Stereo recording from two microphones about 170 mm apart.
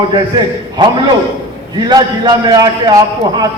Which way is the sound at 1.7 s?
25° right (ahead or behind).